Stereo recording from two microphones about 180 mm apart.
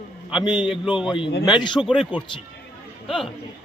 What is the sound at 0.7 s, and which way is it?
Speech, 5° right (ahead or behind).